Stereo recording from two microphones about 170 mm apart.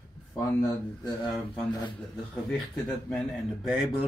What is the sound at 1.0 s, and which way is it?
Speech, 25° left (ahead or behind).